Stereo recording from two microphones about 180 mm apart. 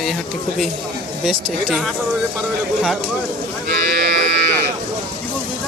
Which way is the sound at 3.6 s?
60° right (ahead or behind).